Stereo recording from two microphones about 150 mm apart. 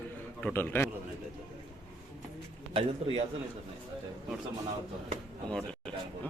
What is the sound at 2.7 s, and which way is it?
Speech, 40° right (ahead or behind).